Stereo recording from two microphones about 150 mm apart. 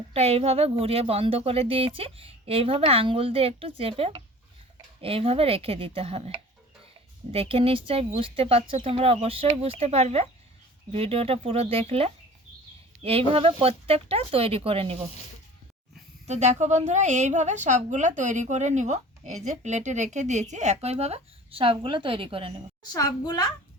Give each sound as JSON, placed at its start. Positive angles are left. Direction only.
{"t": 0.1, "sound": "speech", "side_deg": -40}
{"t": 16.2, "sound": "a woman's voice", "side_deg": -50}
{"t": 22.8, "sound": "a child's voice", "side_deg": 25}